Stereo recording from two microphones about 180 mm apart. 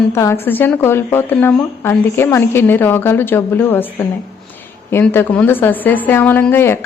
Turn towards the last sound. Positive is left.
turn(degrees=10)  # may be behind; listen again after turning